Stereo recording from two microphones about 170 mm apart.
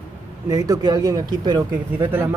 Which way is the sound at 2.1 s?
10° right (ahead or behind).